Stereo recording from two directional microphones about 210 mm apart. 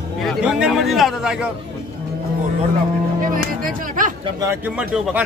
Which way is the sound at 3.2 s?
40° right (ahead or behind).